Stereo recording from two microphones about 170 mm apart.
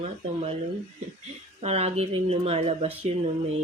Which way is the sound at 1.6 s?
40° right (ahead or behind).